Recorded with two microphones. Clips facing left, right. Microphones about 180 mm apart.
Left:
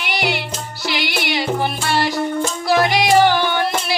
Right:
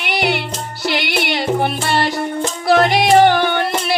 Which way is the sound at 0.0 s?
55° right (ahead or behind).